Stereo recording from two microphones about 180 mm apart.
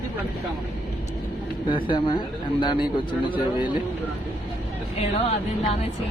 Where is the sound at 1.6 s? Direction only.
25° left (ahead or behind).